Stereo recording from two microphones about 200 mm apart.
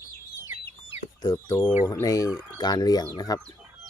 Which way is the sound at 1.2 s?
20° left (ahead or behind).